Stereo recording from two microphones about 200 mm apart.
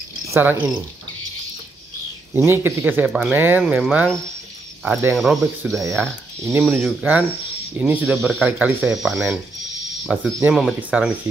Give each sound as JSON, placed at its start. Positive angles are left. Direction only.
{"t": 0.3, "sound": "speech", "side_deg": -10}
{"t": 2.3, "sound": "speech", "side_deg": -10}
{"t": 5.8, "sound": "speech", "side_deg": -15}
{"t": 6.8, "sound": "speech", "side_deg": 0}